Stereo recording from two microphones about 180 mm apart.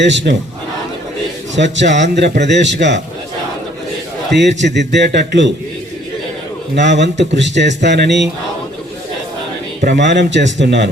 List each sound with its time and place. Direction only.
0.0 s speech: 75° right (ahead or behind)
1.5 s a man's voice: 80° right
4.3 s speech: 70° right (ahead or behind)
6.7 s speech: 75° right (ahead or behind)
10.0 s speech: 75° right (ahead or behind)